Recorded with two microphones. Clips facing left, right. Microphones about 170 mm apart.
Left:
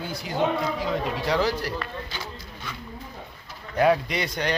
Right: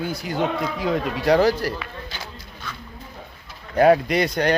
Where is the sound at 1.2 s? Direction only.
45° right (ahead or behind).